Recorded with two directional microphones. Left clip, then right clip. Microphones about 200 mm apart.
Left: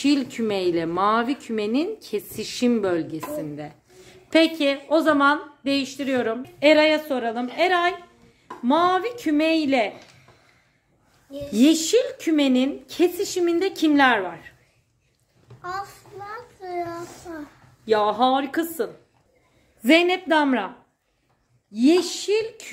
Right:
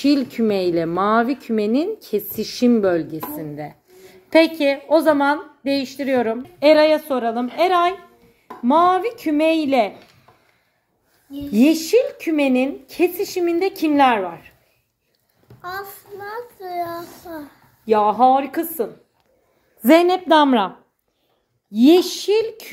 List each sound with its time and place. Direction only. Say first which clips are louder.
0.0 s a woman's voice: right 4 dB; 20° right (ahead or behind)
11.5 s speech: right 3 dB; 15° right (ahead or behind)
15.6 s child singing: right 1 dB; 35° right (ahead or behind)
17.8 s a woman's voice: right 5 dB; 10° right (ahead or behind)
20.2 s a child's voice: right 6 dB; 30° right (ahead or behind)
21.7 s a child's voice: right 5 dB; 35° right (ahead or behind)